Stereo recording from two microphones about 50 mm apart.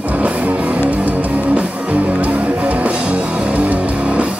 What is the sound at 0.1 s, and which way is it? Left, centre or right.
Music, right.